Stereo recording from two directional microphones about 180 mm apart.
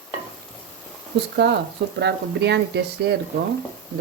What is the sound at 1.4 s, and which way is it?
Speech, 70° right (ahead or behind).